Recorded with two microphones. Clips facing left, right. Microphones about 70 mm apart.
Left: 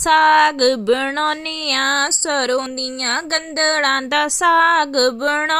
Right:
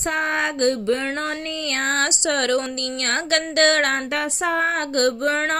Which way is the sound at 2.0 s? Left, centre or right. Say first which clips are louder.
Left 2 dB; left.